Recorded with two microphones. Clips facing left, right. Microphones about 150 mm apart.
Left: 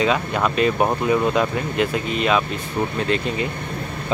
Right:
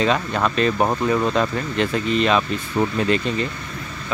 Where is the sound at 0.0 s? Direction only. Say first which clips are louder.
Even; 10° left (ahead or behind).